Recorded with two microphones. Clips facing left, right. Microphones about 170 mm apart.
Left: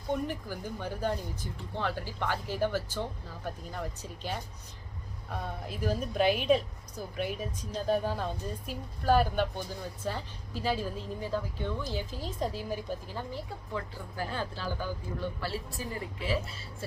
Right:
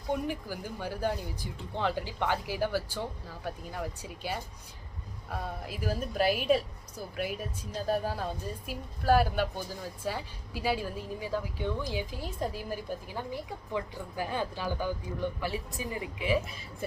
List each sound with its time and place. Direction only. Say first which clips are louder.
0.3 s a woman's voice: right 1 dB; 10° right (ahead or behind)